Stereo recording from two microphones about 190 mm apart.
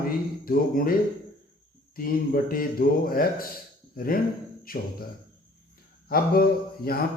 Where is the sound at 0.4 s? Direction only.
50° left (ahead or behind).